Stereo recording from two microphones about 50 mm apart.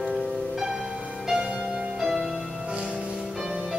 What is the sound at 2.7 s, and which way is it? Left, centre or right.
Music, centre.